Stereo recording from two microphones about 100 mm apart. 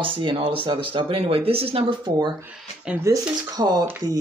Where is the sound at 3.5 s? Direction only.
40° right (ahead or behind).